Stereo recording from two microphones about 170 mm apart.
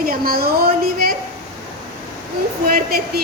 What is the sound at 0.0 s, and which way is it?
A woman's voice, 60° right (ahead or behind).